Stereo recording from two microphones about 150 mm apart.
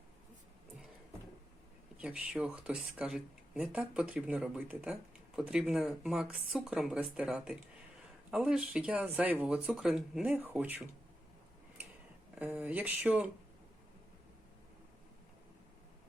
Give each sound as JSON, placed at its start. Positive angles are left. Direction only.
{"t": 2.0, "sound": "speech", "side_deg": -5}
{"t": 12.4, "sound": "speech", "side_deg": -10}